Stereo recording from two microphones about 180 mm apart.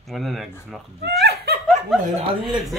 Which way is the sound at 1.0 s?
65° right (ahead or behind).